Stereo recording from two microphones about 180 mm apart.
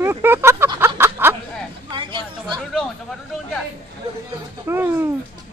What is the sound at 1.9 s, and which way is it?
Chatter, 25° right (ahead or behind).